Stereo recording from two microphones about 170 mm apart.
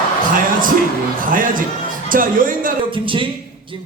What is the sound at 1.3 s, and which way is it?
Speech, 55° right (ahead or behind).